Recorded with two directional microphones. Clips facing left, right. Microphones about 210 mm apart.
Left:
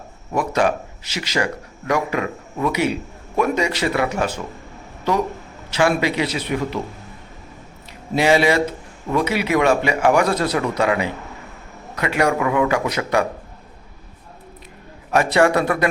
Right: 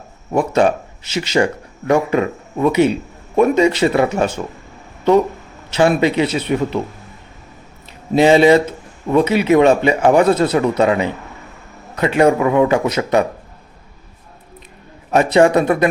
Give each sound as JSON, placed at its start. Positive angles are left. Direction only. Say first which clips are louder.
{"t": 0.3, "sound": "speech", "louder": "right 5 dB", "side_deg": -25}
{"t": 5.7, "sound": "speech", "louder": "right 5 dB", "side_deg": -25}
{"t": 8.1, "sound": "speech", "louder": "right 6 dB", "side_deg": -25}
{"t": 15.1, "sound": "speech", "louder": "right 4 dB", "side_deg": -20}